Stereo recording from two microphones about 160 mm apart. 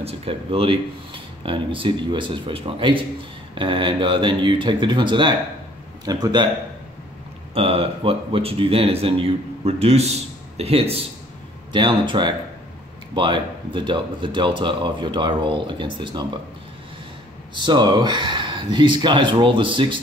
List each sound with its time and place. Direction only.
0.0 s speech: 35° right (ahead or behind)
7.5 s speech: 35° right (ahead or behind)
17.6 s speech: 30° right (ahead or behind)